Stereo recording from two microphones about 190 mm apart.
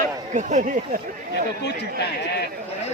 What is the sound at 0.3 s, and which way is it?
Speech, 40° right (ahead or behind).